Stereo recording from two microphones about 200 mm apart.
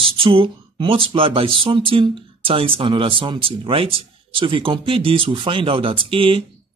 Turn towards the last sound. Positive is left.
turn(degrees=-25)  # may be behind; listen again after turning